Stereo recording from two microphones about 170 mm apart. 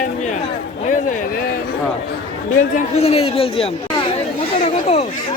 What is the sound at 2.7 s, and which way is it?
A man's voice, 40° left (ahead or behind).